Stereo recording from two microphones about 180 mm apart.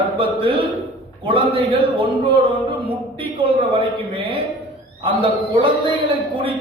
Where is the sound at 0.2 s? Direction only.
30° right (ahead or behind).